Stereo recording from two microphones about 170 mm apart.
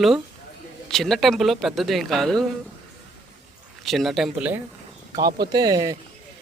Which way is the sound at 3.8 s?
Centre (ahead or behind).